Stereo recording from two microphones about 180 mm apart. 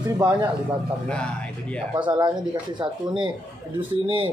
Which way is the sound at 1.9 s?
25° right (ahead or behind).